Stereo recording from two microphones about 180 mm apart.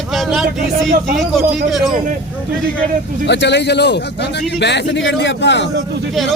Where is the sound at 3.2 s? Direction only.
75° left (ahead or behind).